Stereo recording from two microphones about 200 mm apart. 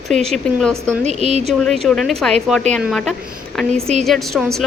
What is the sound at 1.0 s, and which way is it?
Speech, 35° right (ahead or behind).